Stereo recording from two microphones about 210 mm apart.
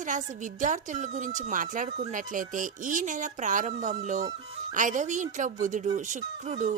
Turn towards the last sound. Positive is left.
turn(degrees=-35)  # may be behind; listen again after turning